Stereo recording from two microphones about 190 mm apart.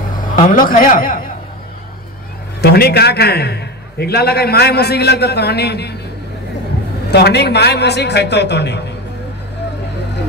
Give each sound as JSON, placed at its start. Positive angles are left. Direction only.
{"t": 0.2, "sound": "a man's voice", "side_deg": 45}
{"t": 2.6, "sound": "a man's voice", "side_deg": 55}
{"t": 7.1, "sound": "a man's voice", "side_deg": 60}